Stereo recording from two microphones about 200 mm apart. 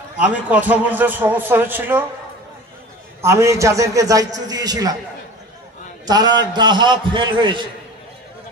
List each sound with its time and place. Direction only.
0.2 s a man's voice: 10° right (ahead or behind)
3.2 s a man's voice: 15° right (ahead or behind)
6.0 s a man's voice: 20° right (ahead or behind)